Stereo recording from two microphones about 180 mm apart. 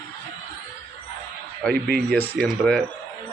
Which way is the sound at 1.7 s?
60° right (ahead or behind).